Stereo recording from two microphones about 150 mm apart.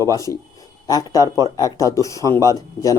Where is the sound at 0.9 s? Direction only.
25° left (ahead or behind).